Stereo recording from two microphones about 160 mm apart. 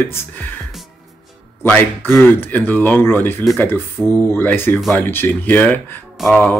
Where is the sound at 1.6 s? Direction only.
15° left (ahead or behind).